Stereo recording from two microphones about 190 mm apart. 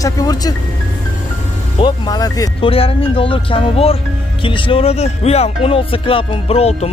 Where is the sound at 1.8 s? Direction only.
20° left (ahead or behind).